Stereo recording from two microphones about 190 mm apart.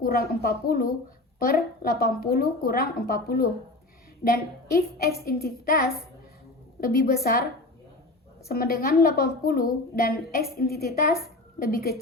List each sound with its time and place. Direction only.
0.0 s a woman's voice: 50° left (ahead or behind)
8.4 s a woman's voice: 50° left (ahead or behind)